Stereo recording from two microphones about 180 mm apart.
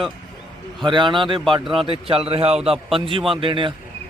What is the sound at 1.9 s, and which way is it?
A man's voice, 30° right (ahead or behind).